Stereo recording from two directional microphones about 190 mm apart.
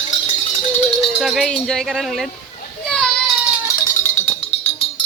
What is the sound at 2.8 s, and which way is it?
Children playing, 5° left (ahead or behind).